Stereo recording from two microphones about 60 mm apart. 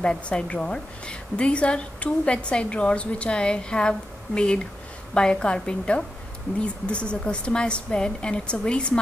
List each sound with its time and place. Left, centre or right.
0.0 s a woman's voice: centre
5.1 s a woman's voice: centre